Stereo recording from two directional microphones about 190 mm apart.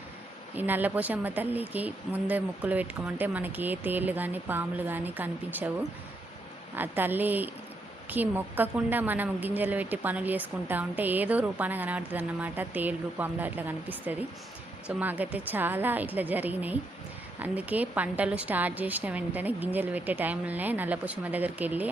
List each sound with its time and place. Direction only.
0.5 s a woman's voice: 10° right (ahead or behind)
6.7 s a woman's voice: 10° right (ahead or behind)